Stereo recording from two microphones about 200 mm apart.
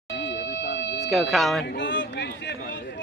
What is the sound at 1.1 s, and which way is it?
Speech, centre (ahead or behind).